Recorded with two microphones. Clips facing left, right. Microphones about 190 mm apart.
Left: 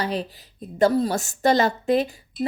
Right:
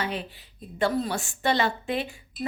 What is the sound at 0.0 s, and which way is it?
A woman's voice, 35° left (ahead or behind).